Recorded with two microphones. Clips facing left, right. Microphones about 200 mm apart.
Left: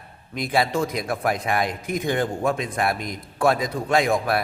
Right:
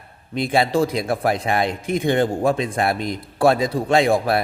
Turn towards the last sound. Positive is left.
turn(degrees=-30)  # may be behind; listen again after turning